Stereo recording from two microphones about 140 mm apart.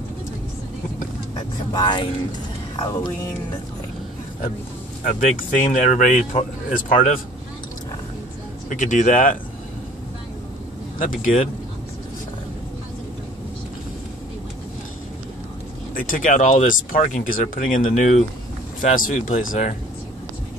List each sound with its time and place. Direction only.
1.3 s vehicle: 30° left (ahead or behind)
5.0 s speech: 70° left (ahead or behind)
8.6 s speech: 60° left (ahead or behind)
11.0 s speech: 75° left (ahead or behind)
15.9 s speech: 85° left